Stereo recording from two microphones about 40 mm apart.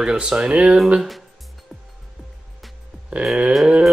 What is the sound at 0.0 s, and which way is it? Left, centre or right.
Speech, right.